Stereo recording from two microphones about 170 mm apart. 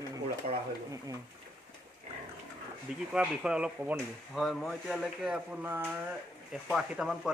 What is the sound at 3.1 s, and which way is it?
Speech, 5° right (ahead or behind).